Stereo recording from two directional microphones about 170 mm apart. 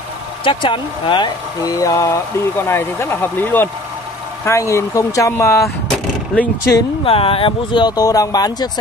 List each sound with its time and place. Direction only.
0.4 s speech: 30° left (ahead or behind)
7.1 s speech: 35° left (ahead or behind)